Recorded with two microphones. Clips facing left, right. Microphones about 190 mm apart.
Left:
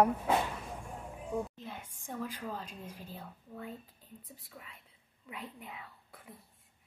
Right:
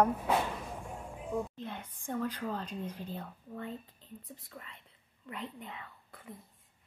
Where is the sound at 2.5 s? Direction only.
5° left (ahead or behind).